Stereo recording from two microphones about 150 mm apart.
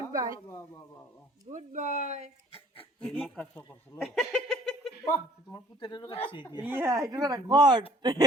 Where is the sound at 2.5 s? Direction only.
40° left (ahead or behind).